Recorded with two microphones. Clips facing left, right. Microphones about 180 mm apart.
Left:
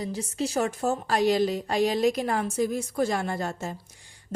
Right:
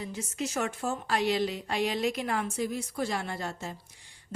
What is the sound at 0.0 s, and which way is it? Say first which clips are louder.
A woman's voice: left 5 dB; 35° left (ahead or behind).